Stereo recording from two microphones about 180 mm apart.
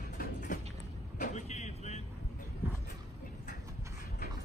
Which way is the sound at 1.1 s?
40° left (ahead or behind).